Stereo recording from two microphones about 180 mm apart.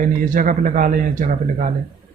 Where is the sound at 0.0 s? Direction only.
45° right (ahead or behind).